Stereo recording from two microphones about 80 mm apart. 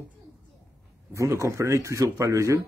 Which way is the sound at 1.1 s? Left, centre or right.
Right.